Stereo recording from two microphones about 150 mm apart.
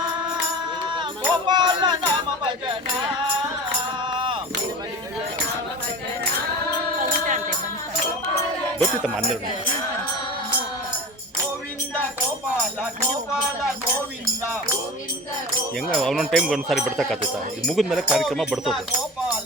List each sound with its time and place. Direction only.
0.9 s music: 30° right (ahead or behind)
4.1 s a sound: 35° right (ahead or behind)
7.0 s music: 60° right (ahead or behind)
15.9 s speech: centre (ahead or behind)